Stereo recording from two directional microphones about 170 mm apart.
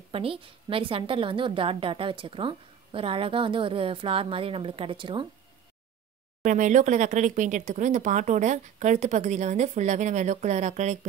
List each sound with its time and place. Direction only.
0.1 s a woman's voice: 30° right (ahead or behind)
6.4 s speech: 50° right (ahead or behind)